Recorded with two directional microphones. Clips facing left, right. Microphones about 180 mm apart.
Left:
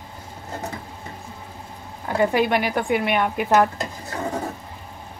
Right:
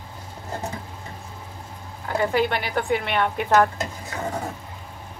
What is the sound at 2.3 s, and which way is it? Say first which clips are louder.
A woman's voice: left 2 dB; 15° left (ahead or behind).